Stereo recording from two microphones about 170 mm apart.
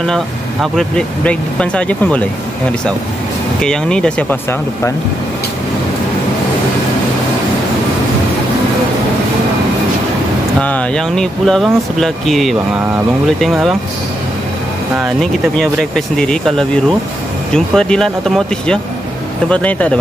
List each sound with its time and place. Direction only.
0.0 s speech: 5° left (ahead or behind)
3.6 s speech: 5° left (ahead or behind)
10.6 s speech: 5° left (ahead or behind)
15.1 s speech: 5° left (ahead or behind)